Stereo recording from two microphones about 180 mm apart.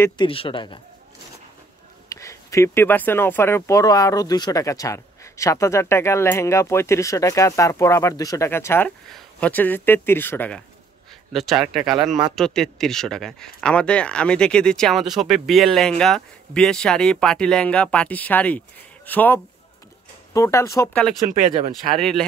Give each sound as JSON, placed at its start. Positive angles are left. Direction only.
{"t": 0.2, "sound": "speech", "side_deg": 30}
{"t": 2.0, "sound": "speech", "side_deg": 15}
{"t": 11.3, "sound": "speech", "side_deg": 0}
{"t": 21.3, "sound": "speech", "side_deg": -45}
{"t": 21.9, "sound": "speech", "side_deg": 0}